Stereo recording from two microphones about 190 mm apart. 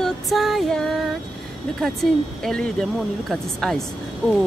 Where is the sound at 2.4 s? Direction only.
5° left (ahead or behind).